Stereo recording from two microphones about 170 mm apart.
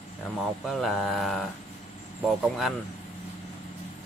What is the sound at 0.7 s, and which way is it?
Speech, centre (ahead or behind).